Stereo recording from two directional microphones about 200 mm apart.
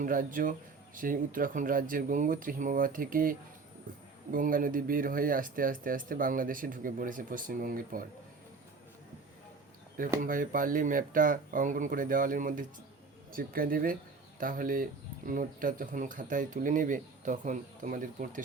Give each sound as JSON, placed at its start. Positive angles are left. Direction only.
{"t": 0.0, "sound": "speech", "side_deg": -45}
{"t": 10.2, "sound": "speech", "side_deg": -45}